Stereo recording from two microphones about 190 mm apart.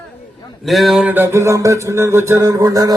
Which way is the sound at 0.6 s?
Centre (ahead or behind).